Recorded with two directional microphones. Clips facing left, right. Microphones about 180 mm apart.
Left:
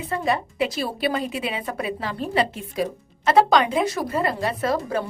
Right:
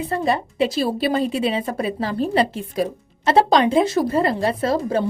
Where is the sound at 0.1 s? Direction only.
30° right (ahead or behind).